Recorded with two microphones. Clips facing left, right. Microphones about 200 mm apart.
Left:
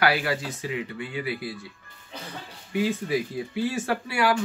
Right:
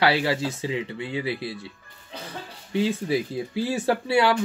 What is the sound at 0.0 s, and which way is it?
Speech, 25° right (ahead or behind).